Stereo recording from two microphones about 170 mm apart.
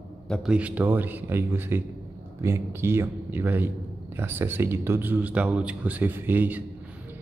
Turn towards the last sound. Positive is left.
turn(degrees=-10)  # may be behind; listen again after turning